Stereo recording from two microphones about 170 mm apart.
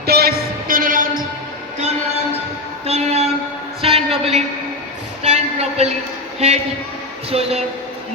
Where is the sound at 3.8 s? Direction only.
35° right (ahead or behind).